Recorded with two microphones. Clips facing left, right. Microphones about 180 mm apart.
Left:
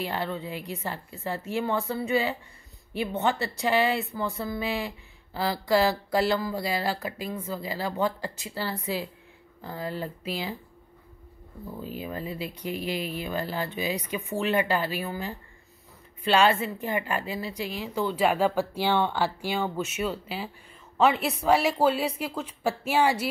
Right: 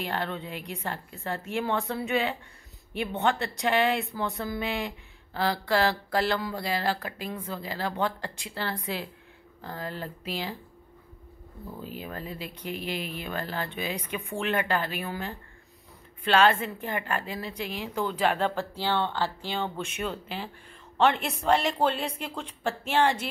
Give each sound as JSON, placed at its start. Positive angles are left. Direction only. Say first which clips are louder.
{"t": 0.0, "sound": "speech", "louder": "left 1 dB", "side_deg": 10}
{"t": 12.0, "sound": "speech", "louder": "left 5 dB", "side_deg": 5}
{"t": 12.6, "sound": "speech", "louder": "left 2 dB", "side_deg": 40}
{"t": 13.2, "sound": "speech", "louder": "left 3 dB", "side_deg": 10}